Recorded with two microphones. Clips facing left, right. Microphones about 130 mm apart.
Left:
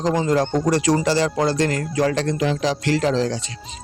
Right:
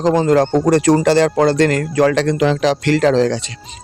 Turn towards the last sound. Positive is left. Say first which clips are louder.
# right 7 dB
turn(degrees=-70)  # may be behind; listen again after turning